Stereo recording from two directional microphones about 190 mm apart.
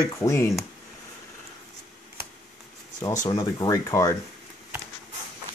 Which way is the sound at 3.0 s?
20° left (ahead or behind).